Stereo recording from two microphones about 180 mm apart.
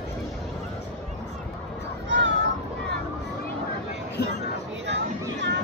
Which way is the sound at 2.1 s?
80° right.